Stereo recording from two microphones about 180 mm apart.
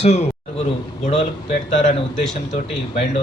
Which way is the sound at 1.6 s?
35° left (ahead or behind).